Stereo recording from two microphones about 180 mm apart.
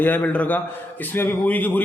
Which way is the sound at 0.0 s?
10° left (ahead or behind).